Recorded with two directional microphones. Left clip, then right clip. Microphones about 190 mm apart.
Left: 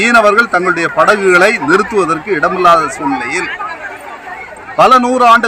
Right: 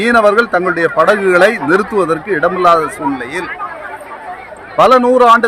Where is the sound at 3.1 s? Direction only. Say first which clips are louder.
Left 3 dB; 35° right (ahead or behind).